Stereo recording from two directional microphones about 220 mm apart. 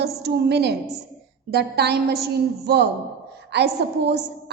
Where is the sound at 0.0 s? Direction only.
50° right (ahead or behind).